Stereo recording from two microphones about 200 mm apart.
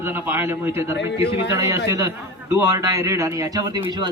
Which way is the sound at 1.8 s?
15° right (ahead or behind).